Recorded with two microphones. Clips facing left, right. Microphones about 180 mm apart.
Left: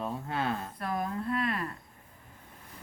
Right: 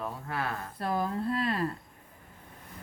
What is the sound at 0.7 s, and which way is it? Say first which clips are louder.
Speech: right 2 dB; 30° right (ahead or behind).